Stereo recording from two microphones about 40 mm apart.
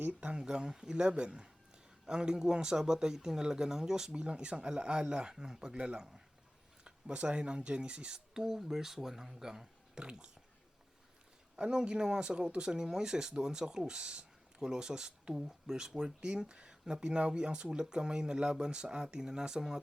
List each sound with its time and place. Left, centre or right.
0.1 s speech: right; by 4.1 s centre
4.1 s speech: right
11.5 s speech: centre